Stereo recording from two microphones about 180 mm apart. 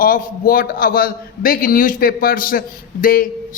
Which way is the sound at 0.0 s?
55° left (ahead or behind).